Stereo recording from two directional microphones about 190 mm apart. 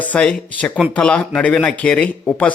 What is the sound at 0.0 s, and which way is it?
Speech, 5° left (ahead or behind).